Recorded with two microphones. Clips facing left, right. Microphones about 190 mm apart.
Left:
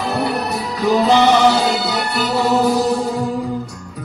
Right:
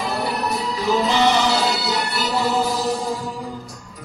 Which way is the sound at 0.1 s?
60° left (ahead or behind).